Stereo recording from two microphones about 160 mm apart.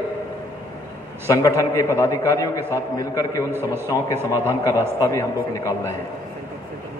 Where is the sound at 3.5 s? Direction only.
15° right (ahead or behind).